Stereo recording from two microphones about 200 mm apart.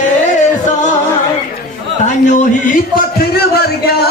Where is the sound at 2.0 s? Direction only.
40° left (ahead or behind).